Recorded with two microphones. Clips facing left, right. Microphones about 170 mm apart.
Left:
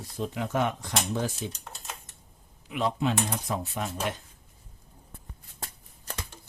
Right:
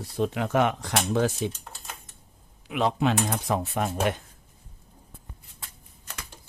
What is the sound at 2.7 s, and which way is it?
Speech, 75° right (ahead or behind).